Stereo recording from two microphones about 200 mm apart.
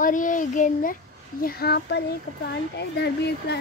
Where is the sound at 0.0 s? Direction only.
40° left (ahead or behind).